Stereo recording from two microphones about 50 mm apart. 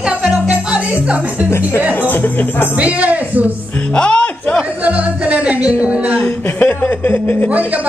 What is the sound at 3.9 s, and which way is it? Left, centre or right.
Music, left.